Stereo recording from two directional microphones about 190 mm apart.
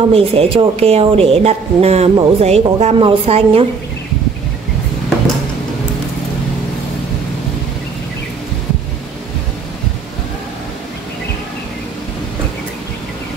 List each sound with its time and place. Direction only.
0.1 s speech: 30° right (ahead or behind)